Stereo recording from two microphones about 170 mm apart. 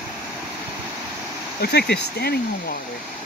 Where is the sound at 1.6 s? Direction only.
70° left (ahead or behind).